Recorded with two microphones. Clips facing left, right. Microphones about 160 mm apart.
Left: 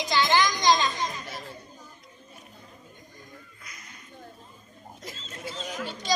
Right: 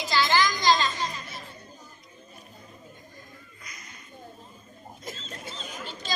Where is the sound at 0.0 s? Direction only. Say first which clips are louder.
Left 1 dB; 20° left (ahead or behind).